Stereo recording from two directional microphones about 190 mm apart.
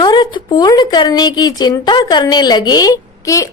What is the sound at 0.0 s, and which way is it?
Speech, 25° left (ahead or behind).